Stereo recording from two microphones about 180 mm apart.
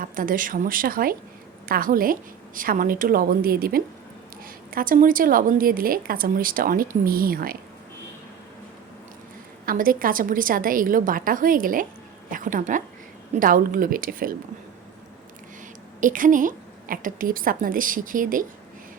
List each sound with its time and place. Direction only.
0.0 s a woman's voice: 50° right (ahead or behind)
9.6 s a woman's voice: 50° right (ahead or behind)
16.0 s a woman's voice: 45° right (ahead or behind)